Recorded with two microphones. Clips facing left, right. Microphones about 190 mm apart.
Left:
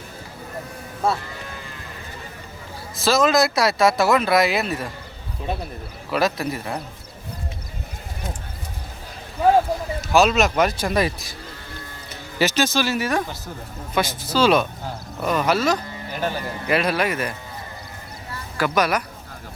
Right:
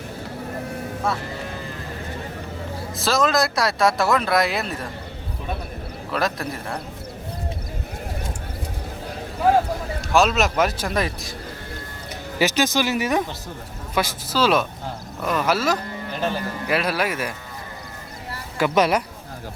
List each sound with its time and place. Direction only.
2.9 s speech: centre (ahead or behind)
6.1 s speech: 5° left (ahead or behind)
10.0 s speech: 5° left (ahead or behind)
12.4 s speech: 15° right (ahead or behind)
13.9 s speech: 5° right (ahead or behind)
18.5 s speech: 20° right (ahead or behind)